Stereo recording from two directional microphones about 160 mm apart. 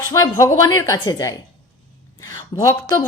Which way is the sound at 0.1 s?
20° left (ahead or behind).